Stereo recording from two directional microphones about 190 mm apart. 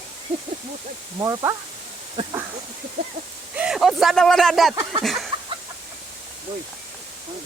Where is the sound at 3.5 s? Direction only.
5° right (ahead or behind).